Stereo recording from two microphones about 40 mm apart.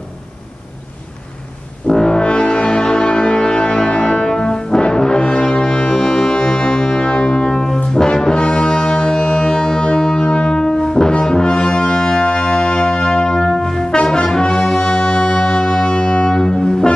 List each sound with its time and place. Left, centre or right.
1.9 s brass instrument: centre